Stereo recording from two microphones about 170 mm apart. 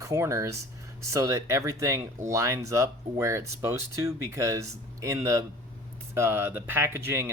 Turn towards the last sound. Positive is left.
turn(degrees=-15)  # may be behind; listen again after turning